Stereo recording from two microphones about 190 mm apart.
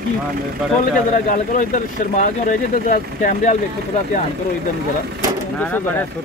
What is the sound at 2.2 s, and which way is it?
Speech, 45° left (ahead or behind).